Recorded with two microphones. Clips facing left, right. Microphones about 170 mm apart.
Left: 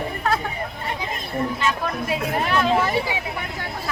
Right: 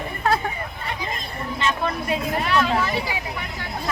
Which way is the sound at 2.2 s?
50° left (ahead or behind).